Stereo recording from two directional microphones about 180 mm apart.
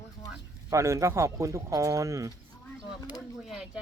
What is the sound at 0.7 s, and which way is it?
Speech, 15° right (ahead or behind).